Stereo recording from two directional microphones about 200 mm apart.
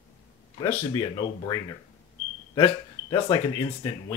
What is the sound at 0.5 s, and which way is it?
Speech, 20° left (ahead or behind).